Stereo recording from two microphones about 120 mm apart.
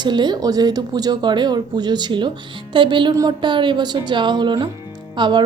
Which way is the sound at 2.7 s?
40° right (ahead or behind).